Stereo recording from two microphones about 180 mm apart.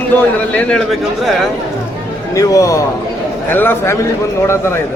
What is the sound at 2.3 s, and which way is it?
A man's voice, 20° left (ahead or behind).